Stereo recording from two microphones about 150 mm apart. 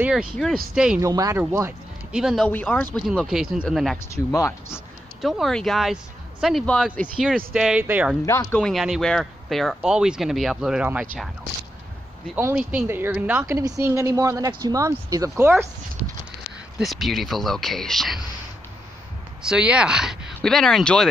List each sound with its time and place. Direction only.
0.0 s speech: 5° right (ahead or behind)
1.0 s speech: 20° right (ahead or behind)
2.1 s speech: centre (ahead or behind)
2.5 s speech: 10° left (ahead or behind)
4.1 s speech: 20° left (ahead or behind)
5.2 s speech: centre (ahead or behind)
7.5 s speech: 5° right (ahead or behind)
8.3 s speech: 20° left (ahead or behind)
8.5 s speech: centre (ahead or behind)
12.4 s speech: 15° right (ahead or behind)
13.6 s speech: 20° right (ahead or behind)
16.7 s speech: centre (ahead or behind)
19.4 s speech: 5° right (ahead or behind)